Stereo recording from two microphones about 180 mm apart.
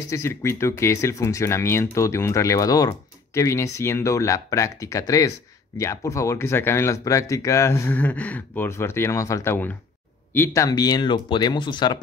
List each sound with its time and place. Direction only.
0.1 s speech: 15° left (ahead or behind)